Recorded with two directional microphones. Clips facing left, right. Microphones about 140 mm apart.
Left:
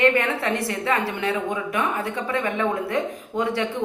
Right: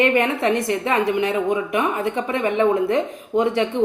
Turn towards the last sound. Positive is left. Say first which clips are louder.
# right 5 dB
turn(degrees=-20)  # may be behind; listen again after turning